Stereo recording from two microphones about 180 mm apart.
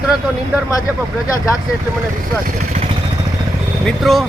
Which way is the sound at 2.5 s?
40° right (ahead or behind).